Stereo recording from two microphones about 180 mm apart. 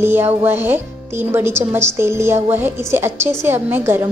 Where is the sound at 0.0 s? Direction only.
10° right (ahead or behind).